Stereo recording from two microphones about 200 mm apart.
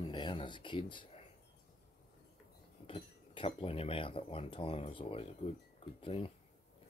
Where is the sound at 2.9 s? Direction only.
30° left (ahead or behind).